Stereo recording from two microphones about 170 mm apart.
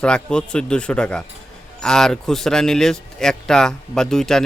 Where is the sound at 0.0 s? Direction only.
5° left (ahead or behind).